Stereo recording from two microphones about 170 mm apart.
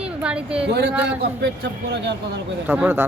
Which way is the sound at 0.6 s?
80° right.